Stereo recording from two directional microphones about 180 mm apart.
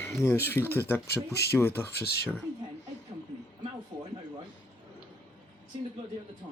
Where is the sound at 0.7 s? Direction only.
10° left (ahead or behind).